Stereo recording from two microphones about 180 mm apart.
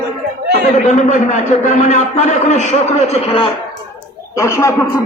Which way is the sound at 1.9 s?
40° left (ahead or behind).